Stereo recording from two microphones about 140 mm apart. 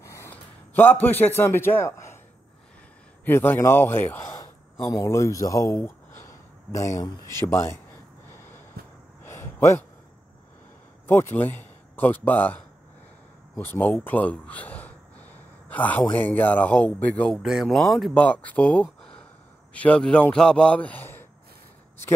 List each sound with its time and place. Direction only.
0.0 s a sound: 20° left (ahead or behind)
1.0 s a man's voice: 15° left (ahead or behind)
3.3 s a man's voice: 15° left (ahead or behind)
9.2 s a sound: 15° left (ahead or behind)
11.1 s speech: 15° left (ahead or behind)
13.6 s a man's voice: 15° left (ahead or behind)
17.4 s a man's voice: centre (ahead or behind); by 21.3 s 15° left (ahead or behind)